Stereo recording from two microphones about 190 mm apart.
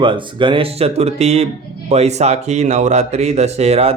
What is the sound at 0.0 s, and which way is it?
Speech, 25° right (ahead or behind).